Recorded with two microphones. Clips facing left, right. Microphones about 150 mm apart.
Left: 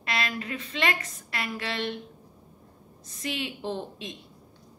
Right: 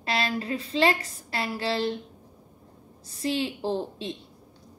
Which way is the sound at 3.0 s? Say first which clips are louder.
Right 6 dB; 30° right (ahead or behind).